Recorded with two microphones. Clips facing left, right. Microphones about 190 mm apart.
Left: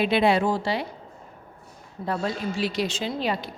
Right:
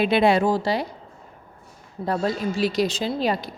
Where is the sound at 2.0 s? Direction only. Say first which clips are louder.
Right 4 dB; 40° right (ahead or behind).